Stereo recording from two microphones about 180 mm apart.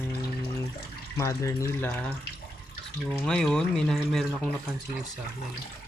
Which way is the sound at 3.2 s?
5° left (ahead or behind).